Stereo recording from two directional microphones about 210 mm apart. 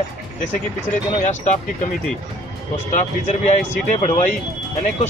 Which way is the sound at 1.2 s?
35° left (ahead or behind).